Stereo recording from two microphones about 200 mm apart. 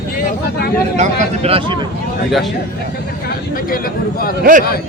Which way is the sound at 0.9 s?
35° right (ahead or behind).